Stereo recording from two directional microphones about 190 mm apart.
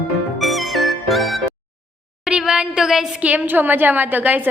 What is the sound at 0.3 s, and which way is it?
Music, centre (ahead or behind).